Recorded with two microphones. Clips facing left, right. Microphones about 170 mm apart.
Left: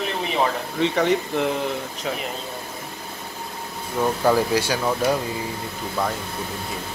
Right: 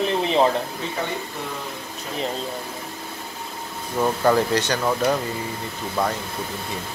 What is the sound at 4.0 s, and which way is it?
Speech, 5° left (ahead or behind).